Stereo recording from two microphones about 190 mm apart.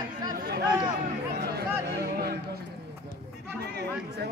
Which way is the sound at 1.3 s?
60° right (ahead or behind).